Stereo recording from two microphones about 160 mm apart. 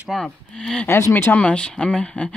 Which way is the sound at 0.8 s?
15° left (ahead or behind).